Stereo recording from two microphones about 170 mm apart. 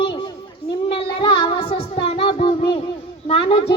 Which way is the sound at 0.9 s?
30° left (ahead or behind).